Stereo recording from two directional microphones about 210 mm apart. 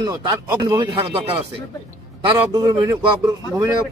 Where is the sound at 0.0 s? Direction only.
15° right (ahead or behind).